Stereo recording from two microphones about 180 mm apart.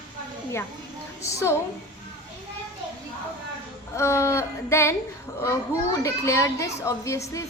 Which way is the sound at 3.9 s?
15° left (ahead or behind).